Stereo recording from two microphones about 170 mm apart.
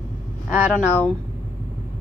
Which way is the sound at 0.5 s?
10° right (ahead or behind).